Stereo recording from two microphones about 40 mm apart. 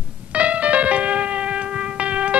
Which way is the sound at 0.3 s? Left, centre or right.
Right.